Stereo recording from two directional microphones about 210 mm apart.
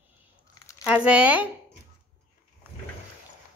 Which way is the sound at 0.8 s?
5° right (ahead or behind).